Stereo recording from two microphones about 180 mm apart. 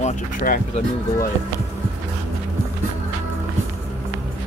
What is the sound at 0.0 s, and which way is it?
Speech, 45° left (ahead or behind).